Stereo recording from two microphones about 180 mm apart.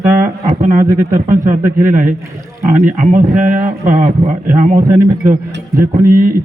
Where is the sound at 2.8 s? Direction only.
45° right (ahead or behind).